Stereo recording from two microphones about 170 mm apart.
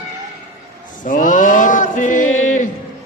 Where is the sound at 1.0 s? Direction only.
50° left (ahead or behind).